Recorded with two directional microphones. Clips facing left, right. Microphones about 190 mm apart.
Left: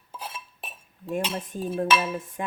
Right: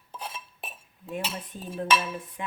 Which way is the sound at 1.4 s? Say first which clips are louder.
Left 6 dB; 45° left (ahead or behind).